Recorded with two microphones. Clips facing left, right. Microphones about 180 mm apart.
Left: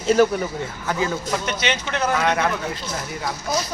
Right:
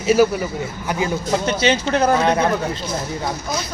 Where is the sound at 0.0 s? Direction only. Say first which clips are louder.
Right 2 dB; 5° right (ahead or behind).